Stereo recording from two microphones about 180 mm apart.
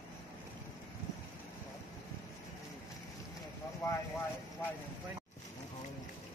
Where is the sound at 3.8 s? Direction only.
15° left (ahead or behind).